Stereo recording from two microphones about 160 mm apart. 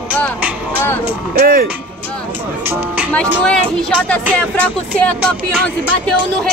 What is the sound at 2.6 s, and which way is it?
Speech, 10° right (ahead or behind).